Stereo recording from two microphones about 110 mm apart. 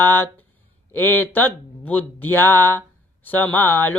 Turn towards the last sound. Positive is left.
turn(degrees=20)  # may be behind; listen again after turning